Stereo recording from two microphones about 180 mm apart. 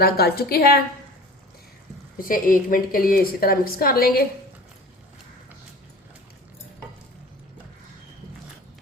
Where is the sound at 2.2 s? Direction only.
50° left (ahead or behind).